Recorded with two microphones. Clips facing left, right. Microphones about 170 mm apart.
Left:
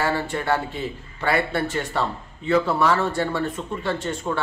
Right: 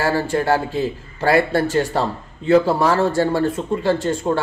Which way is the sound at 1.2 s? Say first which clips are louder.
Right 6 dB; 40° right (ahead or behind).